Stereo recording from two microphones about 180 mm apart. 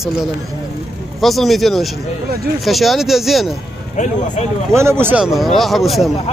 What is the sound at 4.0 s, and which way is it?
Speech, 40° left (ahead or behind).